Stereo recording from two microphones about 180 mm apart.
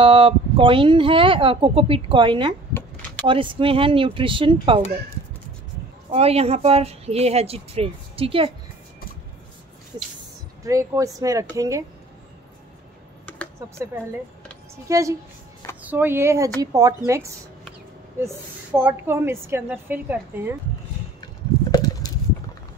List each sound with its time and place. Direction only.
0.0 s speech: 30° right (ahead or behind)
6.1 s a woman's voice: 35° right (ahead or behind)
10.6 s a woman's voice: 20° right (ahead or behind)
14.9 s a woman's voice: 20° right (ahead or behind)
21.7 s a sound: 20° left (ahead or behind)